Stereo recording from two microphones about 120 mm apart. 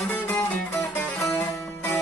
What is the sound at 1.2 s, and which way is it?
Music, 25° left (ahead or behind).